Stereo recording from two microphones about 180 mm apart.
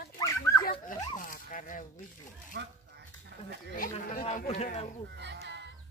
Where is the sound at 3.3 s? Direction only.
65° right (ahead or behind).